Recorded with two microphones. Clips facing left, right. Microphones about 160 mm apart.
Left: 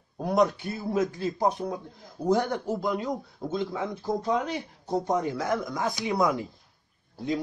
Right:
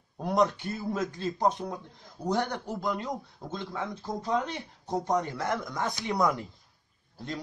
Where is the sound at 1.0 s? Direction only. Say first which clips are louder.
Right 2 dB; 20° left (ahead or behind).